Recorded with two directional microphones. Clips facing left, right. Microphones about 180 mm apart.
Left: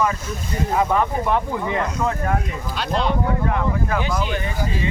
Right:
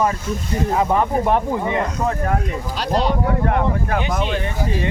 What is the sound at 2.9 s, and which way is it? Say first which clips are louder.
Speech: right 2 dB; 40° right (ahead or behind).